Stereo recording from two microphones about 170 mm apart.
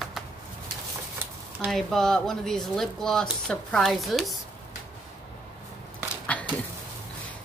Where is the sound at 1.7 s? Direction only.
5° left (ahead or behind).